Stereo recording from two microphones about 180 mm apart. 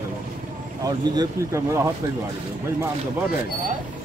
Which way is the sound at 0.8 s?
20° right (ahead or behind).